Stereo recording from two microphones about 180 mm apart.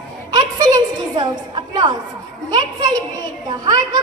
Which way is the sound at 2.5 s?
20° right (ahead or behind).